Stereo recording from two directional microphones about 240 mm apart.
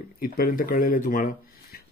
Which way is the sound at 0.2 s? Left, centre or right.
Left.